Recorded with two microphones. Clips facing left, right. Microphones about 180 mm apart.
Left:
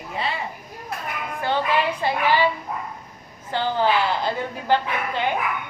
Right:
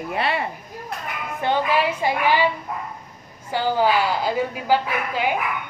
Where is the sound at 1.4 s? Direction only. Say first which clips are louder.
Right 2 dB; 15° right (ahead or behind).